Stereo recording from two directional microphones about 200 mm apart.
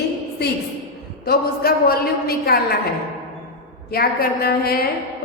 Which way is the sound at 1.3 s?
50° left (ahead or behind).